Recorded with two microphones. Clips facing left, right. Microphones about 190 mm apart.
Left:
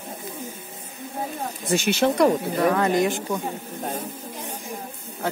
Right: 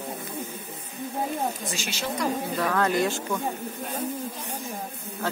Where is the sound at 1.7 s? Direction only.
60° left (ahead or behind).